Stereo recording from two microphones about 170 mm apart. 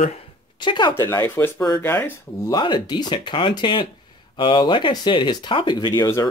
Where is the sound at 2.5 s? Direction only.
25° left (ahead or behind).